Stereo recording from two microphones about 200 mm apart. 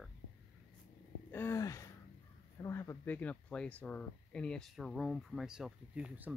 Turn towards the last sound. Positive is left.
turn(degrees=-5)  # may be behind; listen again after turning